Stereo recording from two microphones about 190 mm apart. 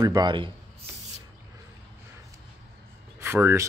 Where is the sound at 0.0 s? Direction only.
20° right (ahead or behind).